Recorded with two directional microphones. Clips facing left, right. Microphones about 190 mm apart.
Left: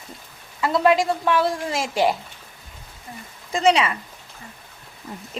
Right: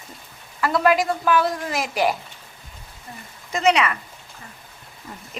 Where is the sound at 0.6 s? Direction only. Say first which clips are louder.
Left 1 dB; 25° left (ahead or behind).